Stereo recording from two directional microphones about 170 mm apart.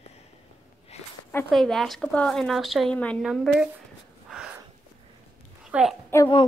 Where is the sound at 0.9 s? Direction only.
40° left (ahead or behind).